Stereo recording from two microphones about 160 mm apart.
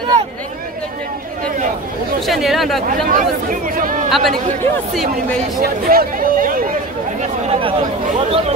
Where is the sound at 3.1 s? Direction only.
55° right (ahead or behind).